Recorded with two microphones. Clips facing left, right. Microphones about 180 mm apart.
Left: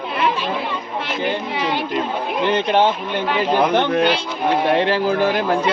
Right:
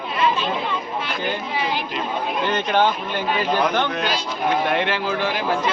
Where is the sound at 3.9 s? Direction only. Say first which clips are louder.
Left 8 dB; 55° left (ahead or behind).